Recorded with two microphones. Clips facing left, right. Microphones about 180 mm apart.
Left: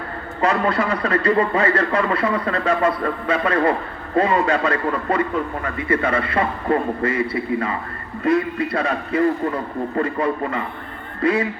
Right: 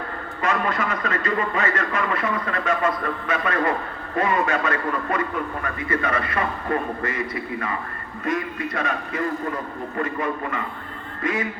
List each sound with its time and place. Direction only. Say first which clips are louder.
0.4 s a man's voice: left 5 dB; 30° left (ahead or behind)